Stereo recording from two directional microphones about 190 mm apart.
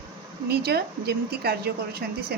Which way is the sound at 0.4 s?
55° right (ahead or behind).